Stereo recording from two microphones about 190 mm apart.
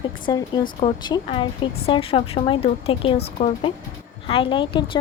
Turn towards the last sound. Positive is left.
turn(degrees=25)  # may be behind; listen again after turning